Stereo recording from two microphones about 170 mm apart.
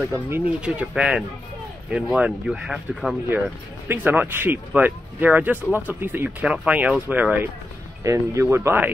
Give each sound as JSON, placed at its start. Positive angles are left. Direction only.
{"t": 0.0, "sound": "speech", "side_deg": -5}